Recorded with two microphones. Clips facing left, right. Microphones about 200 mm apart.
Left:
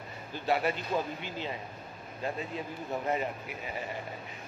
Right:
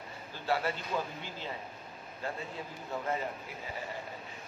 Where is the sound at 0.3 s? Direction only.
15° left (ahead or behind).